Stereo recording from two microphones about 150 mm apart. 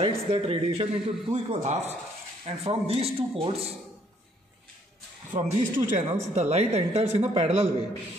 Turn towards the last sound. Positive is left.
turn(degrees=-45)  # may be behind; listen again after turning